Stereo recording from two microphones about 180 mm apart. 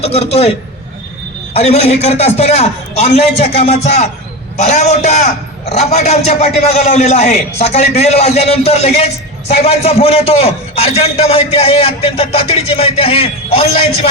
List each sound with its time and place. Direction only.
0.0 s a man's voice: 35° left (ahead or behind)
1.5 s a man's voice: 35° left (ahead or behind)